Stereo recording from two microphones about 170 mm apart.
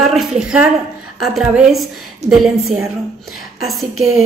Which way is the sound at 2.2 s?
40° right (ahead or behind).